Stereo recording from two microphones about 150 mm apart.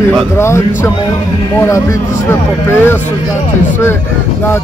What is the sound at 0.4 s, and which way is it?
Speech, 20° left (ahead or behind).